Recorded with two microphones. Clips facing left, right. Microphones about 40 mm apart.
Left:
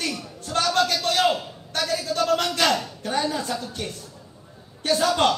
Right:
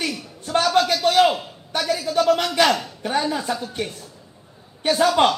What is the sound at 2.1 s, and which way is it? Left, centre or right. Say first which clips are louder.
A man's voice: right 5 dB; right.